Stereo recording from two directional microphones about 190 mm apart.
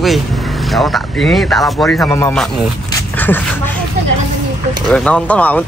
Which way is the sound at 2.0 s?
15° left (ahead or behind).